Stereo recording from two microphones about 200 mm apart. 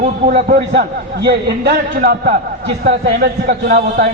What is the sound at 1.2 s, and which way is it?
Speech, 55° right (ahead or behind).